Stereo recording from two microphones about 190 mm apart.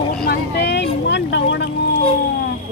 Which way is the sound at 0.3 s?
60° left (ahead or behind).